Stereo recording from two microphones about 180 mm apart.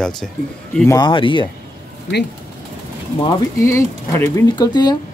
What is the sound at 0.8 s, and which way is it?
Speech, 25° left (ahead or behind).